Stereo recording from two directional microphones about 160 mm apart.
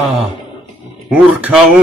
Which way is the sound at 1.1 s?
10° right (ahead or behind).